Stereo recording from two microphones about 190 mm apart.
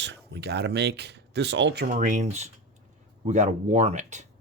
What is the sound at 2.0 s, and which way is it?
Speech, 40° right (ahead or behind).